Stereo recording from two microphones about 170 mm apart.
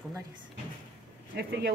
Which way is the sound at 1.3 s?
70° right (ahead or behind).